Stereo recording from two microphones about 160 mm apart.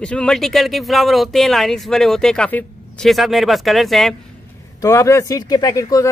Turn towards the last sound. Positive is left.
turn(degrees=20)  # may be behind; listen again after turning